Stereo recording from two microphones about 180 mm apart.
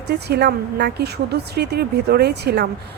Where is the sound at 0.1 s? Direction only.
65° right (ahead or behind).